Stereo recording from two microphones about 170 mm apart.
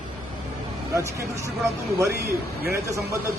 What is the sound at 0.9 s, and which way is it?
Speech, 15° right (ahead or behind).